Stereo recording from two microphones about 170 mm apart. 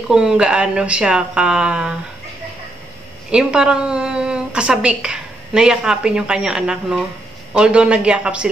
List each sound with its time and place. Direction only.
0.1 s speech: 5° right (ahead or behind)
3.3 s a woman's voice: 5° right (ahead or behind)